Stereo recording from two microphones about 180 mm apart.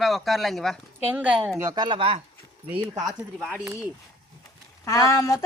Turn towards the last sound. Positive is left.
turn(degrees=20)  # may be behind; listen again after turning